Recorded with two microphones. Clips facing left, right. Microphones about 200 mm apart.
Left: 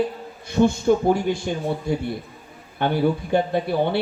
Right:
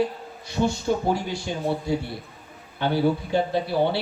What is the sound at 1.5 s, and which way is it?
Speech, 55° left (ahead or behind).